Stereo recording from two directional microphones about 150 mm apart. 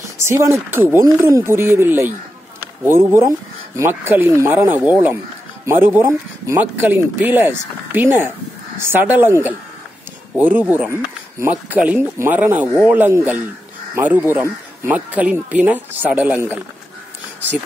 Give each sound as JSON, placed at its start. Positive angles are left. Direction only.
{"t": 0.2, "sound": "speech", "side_deg": -20}